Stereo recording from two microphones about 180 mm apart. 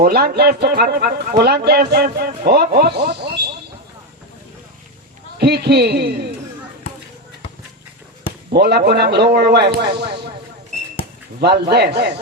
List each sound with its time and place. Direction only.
0.0 s speech: 60° right (ahead or behind)
5.4 s speech: 65° right (ahead or behind)
8.5 s speech: 60° right (ahead or behind)
11.3 s speech: 60° right (ahead or behind)